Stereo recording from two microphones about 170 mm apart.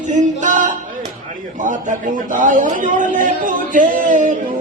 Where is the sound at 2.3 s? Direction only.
50° right (ahead or behind).